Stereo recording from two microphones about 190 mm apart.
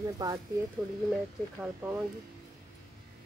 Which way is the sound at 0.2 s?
20° right (ahead or behind).